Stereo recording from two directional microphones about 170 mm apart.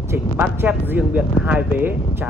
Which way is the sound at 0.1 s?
15° right (ahead or behind).